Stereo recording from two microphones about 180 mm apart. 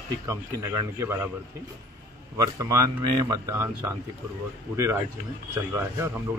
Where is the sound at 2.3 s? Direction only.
20° right (ahead or behind).